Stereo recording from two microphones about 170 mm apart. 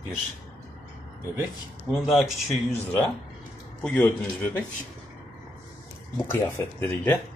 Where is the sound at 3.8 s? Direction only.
10° left (ahead or behind).